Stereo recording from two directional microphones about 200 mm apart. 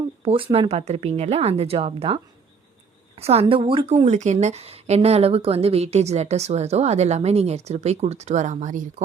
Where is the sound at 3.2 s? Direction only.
30° right (ahead or behind).